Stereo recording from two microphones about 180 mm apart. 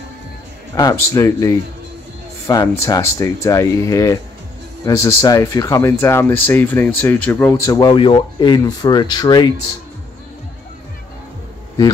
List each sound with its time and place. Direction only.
0.7 s speech: 20° left (ahead or behind)
7.9 s speech: 25° left (ahead or behind)